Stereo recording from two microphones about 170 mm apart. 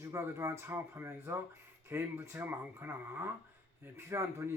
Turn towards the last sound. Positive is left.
turn(degrees=-15)  # may be behind; listen again after turning